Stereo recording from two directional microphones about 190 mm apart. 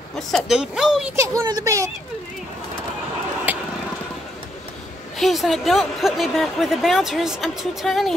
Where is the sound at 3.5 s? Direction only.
10° right (ahead or behind).